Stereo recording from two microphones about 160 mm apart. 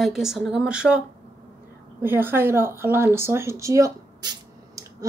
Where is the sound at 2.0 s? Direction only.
15° right (ahead or behind).